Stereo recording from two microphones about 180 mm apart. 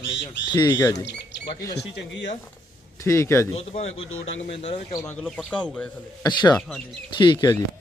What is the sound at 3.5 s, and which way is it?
Speech, 35° left (ahead or behind).